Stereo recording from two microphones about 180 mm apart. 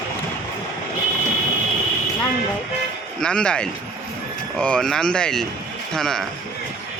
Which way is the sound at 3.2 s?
5° left (ahead or behind).